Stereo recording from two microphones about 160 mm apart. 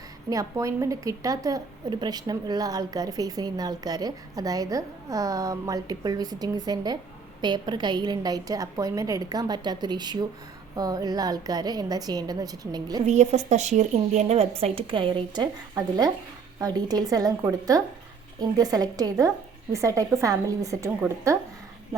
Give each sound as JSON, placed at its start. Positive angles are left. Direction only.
{"t": 0.3, "sound": "a woman's voice", "side_deg": -20}
{"t": 13.1, "sound": "a woman's voice", "side_deg": -45}